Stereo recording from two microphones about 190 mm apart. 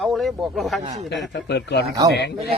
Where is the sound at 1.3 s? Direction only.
65° left (ahead or behind).